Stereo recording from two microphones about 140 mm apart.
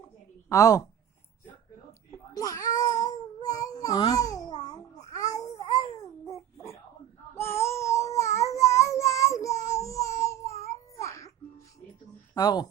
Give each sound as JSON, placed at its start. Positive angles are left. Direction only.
{"t": 0.4, "sound": "a woman's voice", "side_deg": 25}
{"t": 2.0, "sound": "baby cry", "side_deg": 25}
{"t": 3.0, "sound": "babbling", "side_deg": 25}
{"t": 7.3, "sound": "a sound", "side_deg": 20}
{"t": 12.3, "sound": "speech", "side_deg": 30}